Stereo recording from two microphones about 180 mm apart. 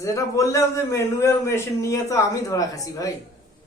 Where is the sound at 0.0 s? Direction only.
15° left (ahead or behind).